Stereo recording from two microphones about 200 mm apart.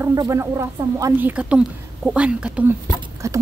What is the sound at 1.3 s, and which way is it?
Speech, 5° right (ahead or behind).